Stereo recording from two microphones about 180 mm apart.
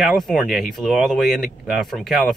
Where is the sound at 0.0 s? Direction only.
Centre (ahead or behind).